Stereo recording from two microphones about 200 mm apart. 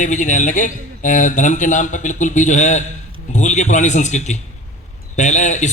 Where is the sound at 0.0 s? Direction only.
40° left (ahead or behind).